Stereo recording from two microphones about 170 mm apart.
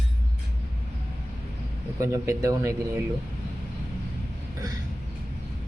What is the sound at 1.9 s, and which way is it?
Speech, 15° right (ahead or behind).